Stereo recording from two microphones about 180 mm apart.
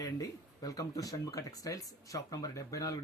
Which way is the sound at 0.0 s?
20° left (ahead or behind).